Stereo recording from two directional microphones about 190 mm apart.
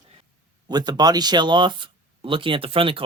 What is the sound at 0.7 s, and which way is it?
Speech, 20° right (ahead or behind).